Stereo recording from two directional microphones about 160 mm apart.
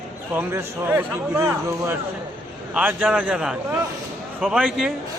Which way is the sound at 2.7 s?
5° right (ahead or behind).